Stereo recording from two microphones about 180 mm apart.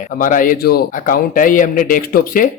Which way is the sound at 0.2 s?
50° left (ahead or behind).